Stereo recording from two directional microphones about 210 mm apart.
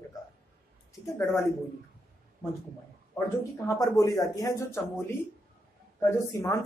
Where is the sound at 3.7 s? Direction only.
15° left (ahead or behind).